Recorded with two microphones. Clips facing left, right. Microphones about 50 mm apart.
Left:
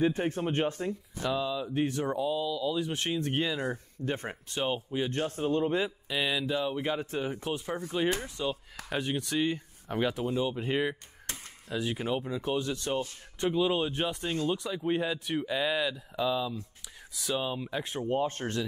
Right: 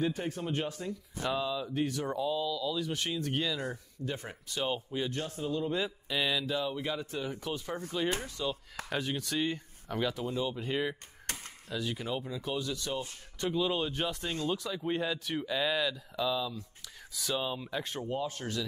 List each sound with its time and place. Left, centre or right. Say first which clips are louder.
0.0 s speech: left 5 dB; left
1.2 s speech: left 2 dB; centre
1.7 s speech: left 3 dB; left
2.0 s speech: left 2 dB; centre; by 4.6 s left
4.6 s speech: left 3 dB; centre
5.1 s speech: left 5 dB; left
6.0 s speech: left 1 dB; centre
6.7 s speech: left 4 dB; left
8.8 s speech: left 3 dB; centre
9.8 s speech: left 3 dB; left
10.6 s speech: left 3 dB; left
13.6 s speech: left 3 dB; centre
17.1 s speech: left 2 dB; centre
18.0 s speech: left 5 dB; left